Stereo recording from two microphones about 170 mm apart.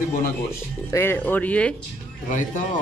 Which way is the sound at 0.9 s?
15° left (ahead or behind).